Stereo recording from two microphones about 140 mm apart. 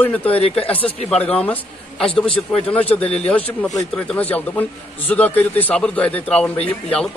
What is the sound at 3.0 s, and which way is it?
Speech, 45° left (ahead or behind).